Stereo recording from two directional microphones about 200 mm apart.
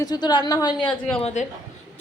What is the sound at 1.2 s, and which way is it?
Speech, 35° left (ahead or behind).